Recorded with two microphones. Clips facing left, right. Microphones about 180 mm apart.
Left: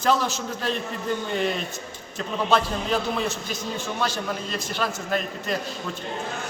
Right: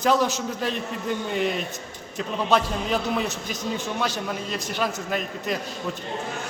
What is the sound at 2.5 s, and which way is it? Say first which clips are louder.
Speech: even; 15° right (ahead or behind).